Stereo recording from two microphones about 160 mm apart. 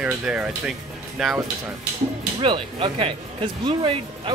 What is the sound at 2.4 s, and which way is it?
Speech, 35° right (ahead or behind).